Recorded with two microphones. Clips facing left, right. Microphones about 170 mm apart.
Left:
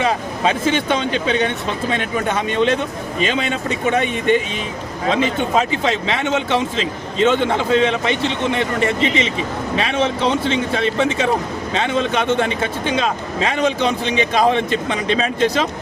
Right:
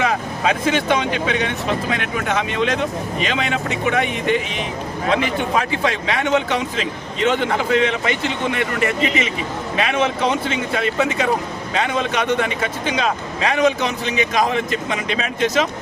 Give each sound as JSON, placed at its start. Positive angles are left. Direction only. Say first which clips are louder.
{"t": 0.0, "sound": "speech", "louder": "left 1 dB", "side_deg": 30}